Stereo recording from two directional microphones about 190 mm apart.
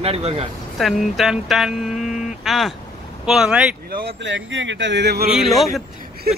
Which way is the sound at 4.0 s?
65° right (ahead or behind).